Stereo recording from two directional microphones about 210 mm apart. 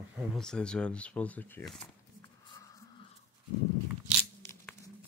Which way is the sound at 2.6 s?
15° left (ahead or behind).